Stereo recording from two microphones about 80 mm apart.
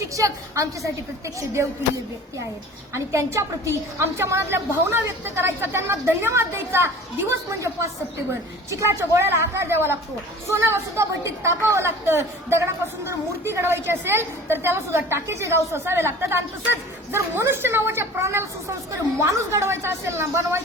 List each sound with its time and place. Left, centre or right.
0.1 s a woman's voice: right
2.9 s a woman's voice: right